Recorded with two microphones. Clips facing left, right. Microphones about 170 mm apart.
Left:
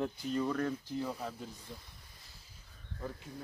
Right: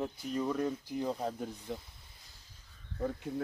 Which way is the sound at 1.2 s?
40° right (ahead or behind).